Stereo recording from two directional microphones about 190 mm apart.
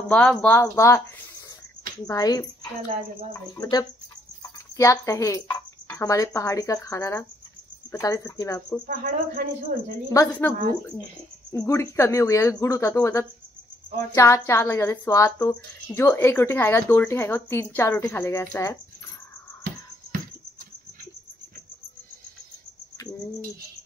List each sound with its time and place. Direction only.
0.1 s a woman's voice: 5° left (ahead or behind)
2.0 s a woman's voice: 20° left (ahead or behind)
8.8 s speech: 45° right (ahead or behind)
10.0 s a woman's voice: 15° left (ahead or behind)
11.5 s a woman's voice: 15° left (ahead or behind)